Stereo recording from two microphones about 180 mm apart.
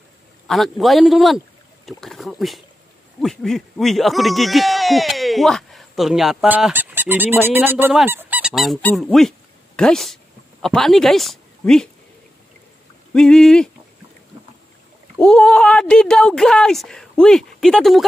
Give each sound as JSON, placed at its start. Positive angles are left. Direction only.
{"t": 0.5, "sound": "a man's voice", "side_deg": 0}
{"t": 13.1, "sound": "a man's voice", "side_deg": 5}
{"t": 15.1, "sound": "a man's voice", "side_deg": 5}